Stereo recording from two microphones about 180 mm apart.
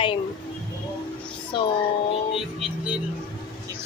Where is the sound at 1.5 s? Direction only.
30° left (ahead or behind).